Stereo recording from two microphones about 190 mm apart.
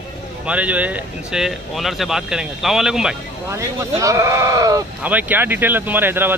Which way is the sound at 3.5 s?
15° right (ahead or behind).